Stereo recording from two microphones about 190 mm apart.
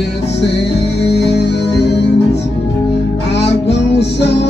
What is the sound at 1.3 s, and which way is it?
Music, 60° left (ahead or behind).